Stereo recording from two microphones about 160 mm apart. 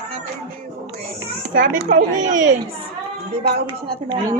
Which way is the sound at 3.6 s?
25° right (ahead or behind).